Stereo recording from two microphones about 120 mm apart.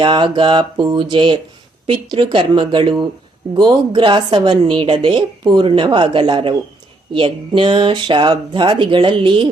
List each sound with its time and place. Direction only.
0.0 s a woman's voice: 40° right (ahead or behind)